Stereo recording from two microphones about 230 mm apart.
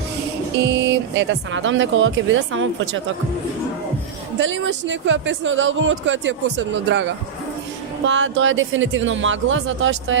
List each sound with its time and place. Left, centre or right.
0.6 s speech: right
4.4 s speech: right
8.0 s speech: right